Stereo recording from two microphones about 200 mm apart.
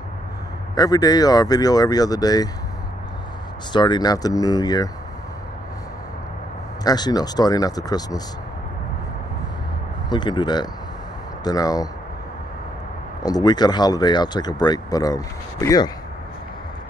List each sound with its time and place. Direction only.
0.7 s speech: 20° left (ahead or behind)
3.7 s speech: 20° left (ahead or behind)
6.8 s speech: 20° left (ahead or behind)
10.0 s speech: 20° left (ahead or behind)
13.2 s speech: 20° left (ahead or behind)